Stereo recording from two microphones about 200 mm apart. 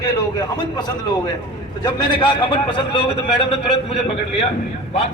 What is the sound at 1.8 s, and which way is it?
Speech, 25° left (ahead or behind).